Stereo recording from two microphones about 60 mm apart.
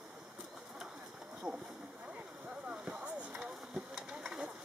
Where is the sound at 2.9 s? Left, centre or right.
Centre.